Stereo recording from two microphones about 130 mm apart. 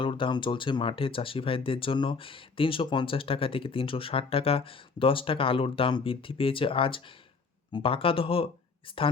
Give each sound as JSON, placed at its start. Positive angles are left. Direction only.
{"t": 0.0, "sound": "speech", "side_deg": 40}